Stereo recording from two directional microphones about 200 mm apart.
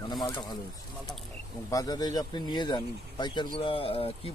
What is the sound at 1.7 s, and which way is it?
Speech, 15° left (ahead or behind).